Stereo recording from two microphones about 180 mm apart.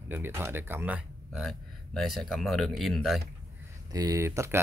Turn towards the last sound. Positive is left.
turn(degrees=-15)  # may be behind; listen again after turning